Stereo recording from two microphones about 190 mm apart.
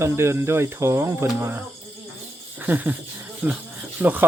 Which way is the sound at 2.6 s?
10° right (ahead or behind).